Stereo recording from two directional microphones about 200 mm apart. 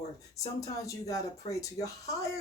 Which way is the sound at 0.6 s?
15° left (ahead or behind).